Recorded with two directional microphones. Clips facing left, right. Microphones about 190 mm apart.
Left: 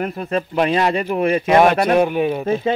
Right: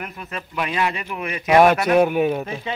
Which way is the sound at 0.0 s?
35° left (ahead or behind).